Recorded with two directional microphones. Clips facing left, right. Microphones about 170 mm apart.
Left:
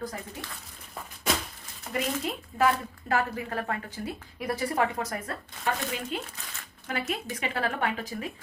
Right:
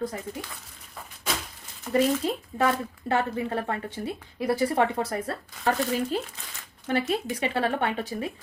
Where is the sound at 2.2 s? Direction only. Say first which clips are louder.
Right 1 dB; 30° right (ahead or behind).